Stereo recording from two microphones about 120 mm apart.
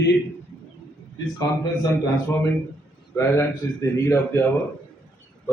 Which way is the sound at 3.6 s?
25° left (ahead or behind).